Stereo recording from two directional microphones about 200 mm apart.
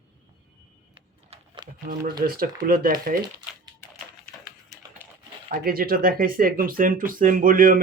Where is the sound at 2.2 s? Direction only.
45° right (ahead or behind).